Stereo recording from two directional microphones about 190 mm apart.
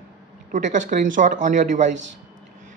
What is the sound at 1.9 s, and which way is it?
Speech, 75° right (ahead or behind).